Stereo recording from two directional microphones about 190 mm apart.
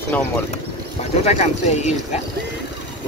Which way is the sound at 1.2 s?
35° left (ahead or behind).